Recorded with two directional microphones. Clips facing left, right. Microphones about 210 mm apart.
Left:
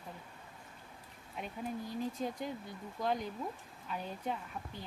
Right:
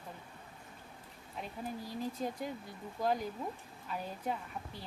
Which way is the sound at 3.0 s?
5° right (ahead or behind).